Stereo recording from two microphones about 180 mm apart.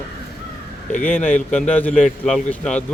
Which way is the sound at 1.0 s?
10° left (ahead or behind).